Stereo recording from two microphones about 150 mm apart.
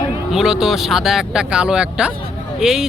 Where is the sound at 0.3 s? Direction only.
5° right (ahead or behind).